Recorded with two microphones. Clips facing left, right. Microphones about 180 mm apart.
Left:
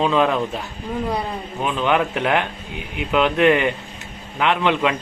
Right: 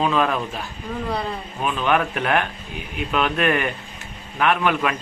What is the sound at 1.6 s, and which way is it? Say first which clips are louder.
A man's voice: left 1 dB; 20° left (ahead or behind).